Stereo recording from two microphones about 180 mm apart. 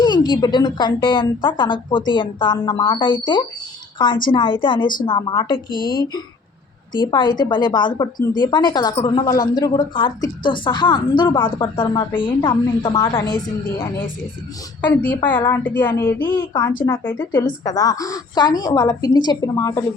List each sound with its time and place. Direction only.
0.0 s a woman's voice: 25° left (ahead or behind)
15.0 s a woman's voice: 10° left (ahead or behind)
16.2 s a woman's voice: 20° left (ahead or behind)
16.8 s a woman's voice: 10° left (ahead or behind)
17.4 s a woman's voice: 20° left (ahead or behind)